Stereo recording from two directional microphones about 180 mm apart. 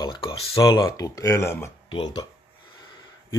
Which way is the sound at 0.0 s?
25° left (ahead or behind).